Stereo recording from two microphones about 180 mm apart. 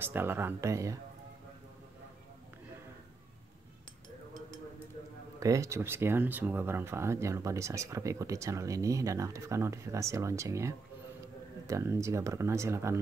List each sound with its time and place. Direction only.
0.0 s speech: 10° right (ahead or behind)
5.4 s speech: 15° right (ahead or behind)